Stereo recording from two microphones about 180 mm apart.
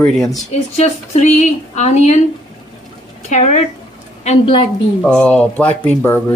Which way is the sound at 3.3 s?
40° left (ahead or behind).